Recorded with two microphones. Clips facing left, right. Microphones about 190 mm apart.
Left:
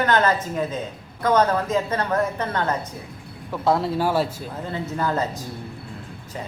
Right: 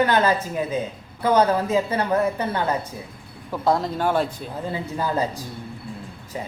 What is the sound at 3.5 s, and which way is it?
Speech, 5° left (ahead or behind).